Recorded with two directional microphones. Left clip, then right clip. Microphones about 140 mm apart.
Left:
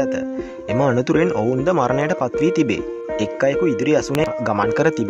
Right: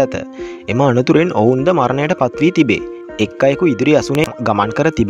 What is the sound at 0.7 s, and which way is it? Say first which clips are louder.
Speech: right 5 dB; 35° right (ahead or behind).